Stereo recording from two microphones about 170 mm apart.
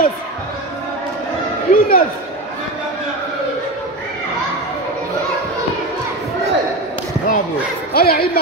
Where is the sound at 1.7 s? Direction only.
55° left (ahead or behind).